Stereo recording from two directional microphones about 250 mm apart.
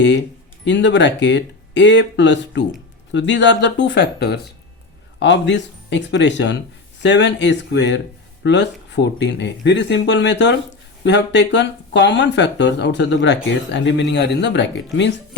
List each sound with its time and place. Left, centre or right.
0.0 s speech: left